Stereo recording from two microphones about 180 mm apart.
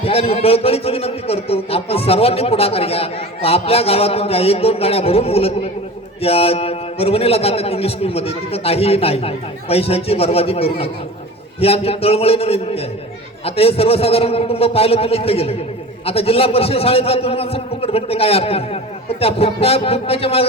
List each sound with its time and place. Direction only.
0.0 s a man's voice: 35° left (ahead or behind)